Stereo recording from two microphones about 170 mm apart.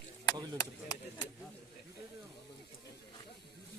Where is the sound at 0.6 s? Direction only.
20° left (ahead or behind).